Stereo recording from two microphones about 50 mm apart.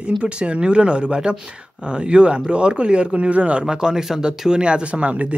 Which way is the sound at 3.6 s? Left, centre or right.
Centre.